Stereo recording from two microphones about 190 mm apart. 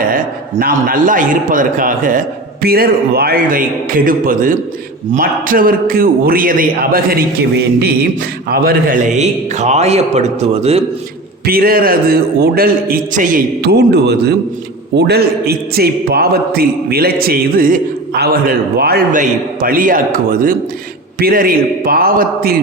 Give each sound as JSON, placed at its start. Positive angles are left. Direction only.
{"t": 0.1, "sound": "a man's voice", "side_deg": -50}
{"t": 8.4, "sound": "a man's voice", "side_deg": -55}
{"t": 11.4, "sound": "a man's voice", "side_deg": -50}